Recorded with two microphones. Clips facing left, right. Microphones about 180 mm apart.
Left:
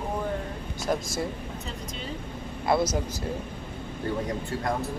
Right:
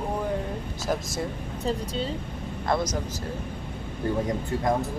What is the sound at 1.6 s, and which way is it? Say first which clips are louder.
Speech: right 14 dB; 35° right (ahead or behind).